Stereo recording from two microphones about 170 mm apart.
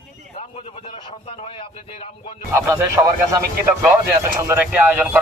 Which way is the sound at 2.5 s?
15° right (ahead or behind).